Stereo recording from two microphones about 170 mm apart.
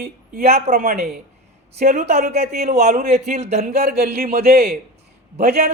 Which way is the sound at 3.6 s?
65° right (ahead or behind).